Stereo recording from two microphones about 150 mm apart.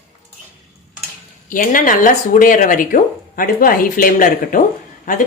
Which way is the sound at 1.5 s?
65° left (ahead or behind).